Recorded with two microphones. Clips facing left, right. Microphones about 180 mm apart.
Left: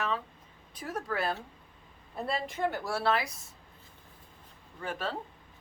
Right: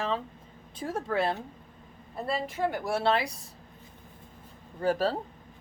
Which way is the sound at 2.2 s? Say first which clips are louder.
Right 2 dB; centre (ahead or behind).